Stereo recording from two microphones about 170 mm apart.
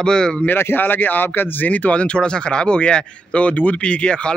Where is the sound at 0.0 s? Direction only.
5° left (ahead or behind).